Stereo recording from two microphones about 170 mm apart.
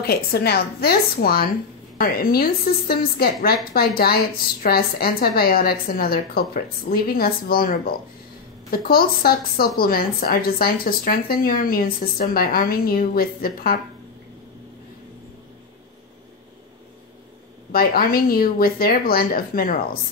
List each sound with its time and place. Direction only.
0.0 s speech: 65° left (ahead or behind)
17.7 s speech: 60° left (ahead or behind)